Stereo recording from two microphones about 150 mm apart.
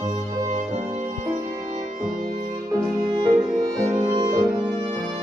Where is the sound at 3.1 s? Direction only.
30° right (ahead or behind).